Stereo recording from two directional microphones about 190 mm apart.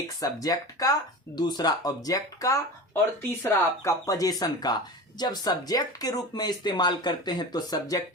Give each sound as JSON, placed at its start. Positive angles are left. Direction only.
{"t": 0.2, "sound": "speech", "side_deg": 20}